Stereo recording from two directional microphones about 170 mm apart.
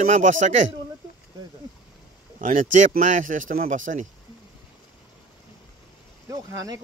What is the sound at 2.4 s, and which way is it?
Speech, 50° right (ahead or behind).